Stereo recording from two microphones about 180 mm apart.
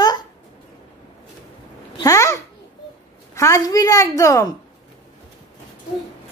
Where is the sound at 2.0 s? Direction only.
15° left (ahead or behind).